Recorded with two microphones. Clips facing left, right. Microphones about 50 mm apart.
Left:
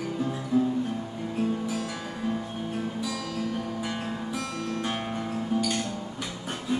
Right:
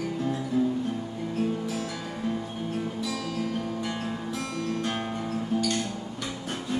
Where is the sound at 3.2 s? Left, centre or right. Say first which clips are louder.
Right 1 dB; right.